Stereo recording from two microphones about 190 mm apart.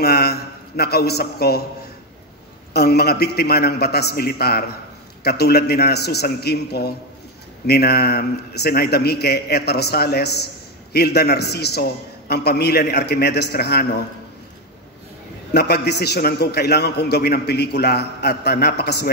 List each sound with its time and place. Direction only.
0.0 s a man's voice: 55° left (ahead or behind)
2.7 s a man's voice: 55° left (ahead or behind)
15.5 s a man's voice: 60° left (ahead or behind)